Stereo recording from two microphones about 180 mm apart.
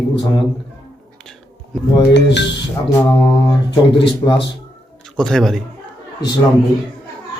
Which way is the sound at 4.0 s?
25° left (ahead or behind).